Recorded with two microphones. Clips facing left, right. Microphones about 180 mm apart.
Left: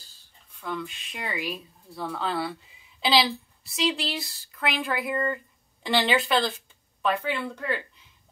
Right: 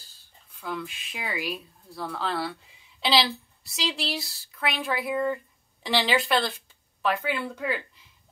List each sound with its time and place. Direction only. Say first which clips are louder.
0.6 s speech: left 1 dB; centre (ahead or behind)